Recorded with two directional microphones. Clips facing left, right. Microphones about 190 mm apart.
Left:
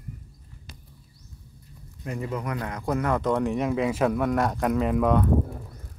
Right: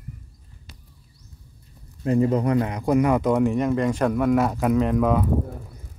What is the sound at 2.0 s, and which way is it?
Speech, 35° right (ahead or behind).